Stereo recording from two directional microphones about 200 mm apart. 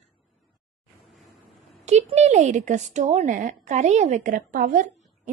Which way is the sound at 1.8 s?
35° right (ahead or behind).